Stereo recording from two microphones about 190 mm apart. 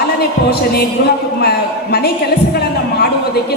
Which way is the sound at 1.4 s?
55° left (ahead or behind).